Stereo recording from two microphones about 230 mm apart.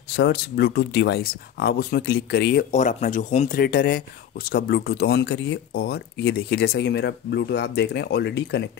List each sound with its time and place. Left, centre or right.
0.1 s speech: left